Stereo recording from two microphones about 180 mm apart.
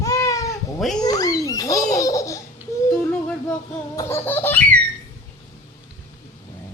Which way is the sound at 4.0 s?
15° left (ahead or behind).